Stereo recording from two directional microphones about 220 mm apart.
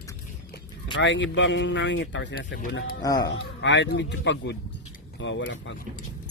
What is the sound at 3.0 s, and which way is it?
Speech, 15° left (ahead or behind).